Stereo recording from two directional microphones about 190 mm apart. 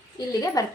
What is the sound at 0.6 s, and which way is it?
Speech, 20° left (ahead or behind).